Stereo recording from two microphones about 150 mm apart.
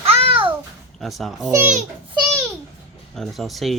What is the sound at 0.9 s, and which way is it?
Speech, centre (ahead or behind).